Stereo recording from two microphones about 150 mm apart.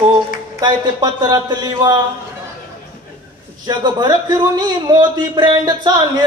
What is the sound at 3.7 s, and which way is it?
A man's voice, 30° right (ahead or behind).